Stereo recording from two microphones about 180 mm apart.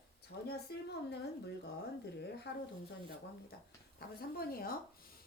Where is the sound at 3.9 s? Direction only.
55° left (ahead or behind).